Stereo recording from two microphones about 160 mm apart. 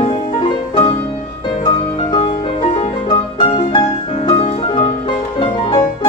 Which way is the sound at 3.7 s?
30° left (ahead or behind).